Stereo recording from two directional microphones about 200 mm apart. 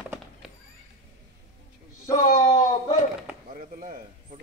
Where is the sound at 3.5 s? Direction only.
40° right (ahead or behind).